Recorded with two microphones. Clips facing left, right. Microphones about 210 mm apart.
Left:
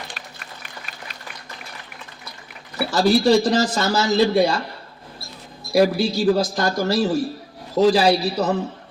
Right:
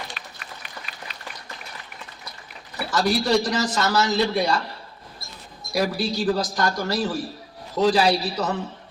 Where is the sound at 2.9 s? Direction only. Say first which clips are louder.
Left 5 dB; 30° left (ahead or behind).